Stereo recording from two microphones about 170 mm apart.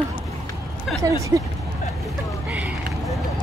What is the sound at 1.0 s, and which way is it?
Speech, 15° right (ahead or behind).